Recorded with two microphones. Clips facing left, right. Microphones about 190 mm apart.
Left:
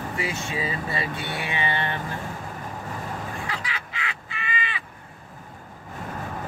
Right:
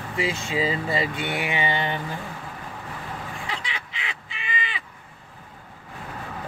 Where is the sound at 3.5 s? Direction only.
25° right (ahead or behind).